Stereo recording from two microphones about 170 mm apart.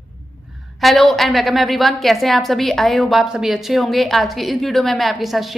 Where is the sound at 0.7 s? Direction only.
Centre (ahead or behind).